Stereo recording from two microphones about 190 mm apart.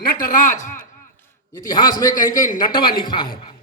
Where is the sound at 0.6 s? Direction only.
40° left (ahead or behind).